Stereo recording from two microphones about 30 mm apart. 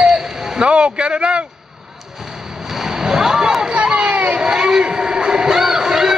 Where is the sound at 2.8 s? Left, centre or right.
Centre.